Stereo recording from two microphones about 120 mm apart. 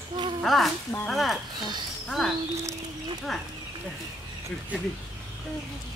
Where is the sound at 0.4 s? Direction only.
Centre (ahead or behind).